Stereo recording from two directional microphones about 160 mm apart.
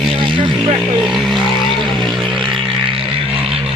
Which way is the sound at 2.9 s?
35° right (ahead or behind).